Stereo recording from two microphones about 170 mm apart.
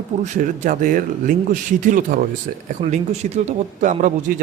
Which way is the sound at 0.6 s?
50° right (ahead or behind).